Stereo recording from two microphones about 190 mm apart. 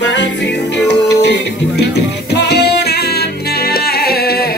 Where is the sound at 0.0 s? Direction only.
65° left (ahead or behind).